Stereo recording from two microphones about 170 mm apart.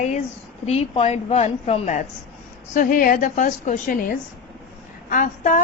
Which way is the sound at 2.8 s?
55° left (ahead or behind).